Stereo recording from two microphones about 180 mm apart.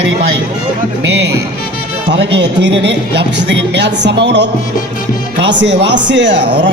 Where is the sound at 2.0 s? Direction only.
75° right (ahead or behind).